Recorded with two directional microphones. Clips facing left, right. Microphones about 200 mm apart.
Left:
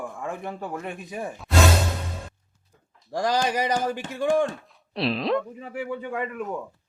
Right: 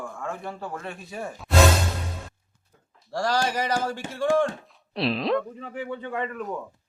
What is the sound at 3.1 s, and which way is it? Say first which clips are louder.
Speech: left 1 dB; 15° left (ahead or behind).